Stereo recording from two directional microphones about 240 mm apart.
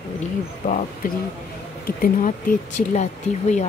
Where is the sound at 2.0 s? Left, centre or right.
Left.